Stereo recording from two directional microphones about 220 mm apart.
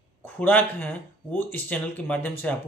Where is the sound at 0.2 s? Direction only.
10° left (ahead or behind).